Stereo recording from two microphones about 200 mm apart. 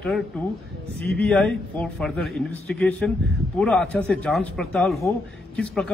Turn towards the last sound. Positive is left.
turn(degrees=5)  # may be behind; listen again after turning